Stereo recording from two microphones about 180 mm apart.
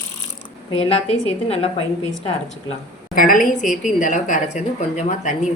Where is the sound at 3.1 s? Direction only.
50° left (ahead or behind).